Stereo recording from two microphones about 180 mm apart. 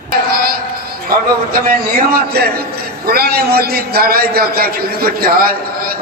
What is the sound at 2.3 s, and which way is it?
A man's voice, 60° right (ahead or behind).